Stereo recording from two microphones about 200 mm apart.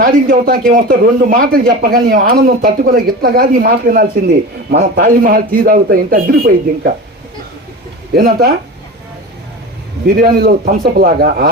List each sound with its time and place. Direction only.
0.0 s speech: 45° right (ahead or behind)
8.1 s speech: 50° right (ahead or behind)
10.2 s speech: 50° right (ahead or behind)